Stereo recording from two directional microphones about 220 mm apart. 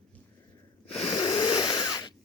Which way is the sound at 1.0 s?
25° left (ahead or behind).